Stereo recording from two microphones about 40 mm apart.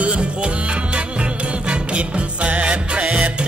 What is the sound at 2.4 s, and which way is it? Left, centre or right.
Music, right.